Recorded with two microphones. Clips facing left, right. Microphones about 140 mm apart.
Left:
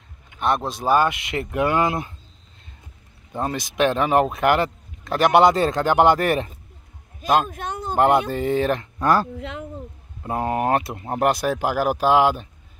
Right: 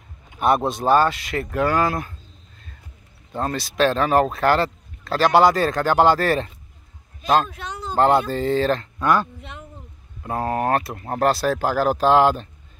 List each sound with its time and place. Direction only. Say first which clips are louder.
0.7 s speech: right 3 dB; centre (ahead or behind)
0.9 s speech: even; 20° left (ahead or behind)
3.3 s speech: right 1 dB; 15° left (ahead or behind)
7.4 s a sound: left 3 dB; 50° left (ahead or behind)
7.9 s speech: even; 15° left (ahead or behind)
9.0 s speech: left 1 dB; 35° left (ahead or behind)
9.4 s speech: left 7 dB; 90° left
10.2 s speech: even; 20° left (ahead or behind)